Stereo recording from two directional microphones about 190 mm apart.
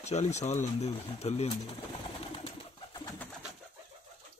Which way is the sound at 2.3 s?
30° left (ahead or behind).